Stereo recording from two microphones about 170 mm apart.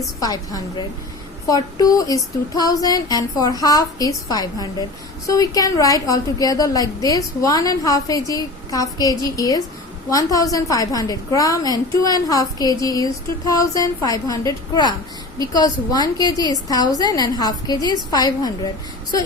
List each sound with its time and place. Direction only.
0.2 s speech: 20° left (ahead or behind)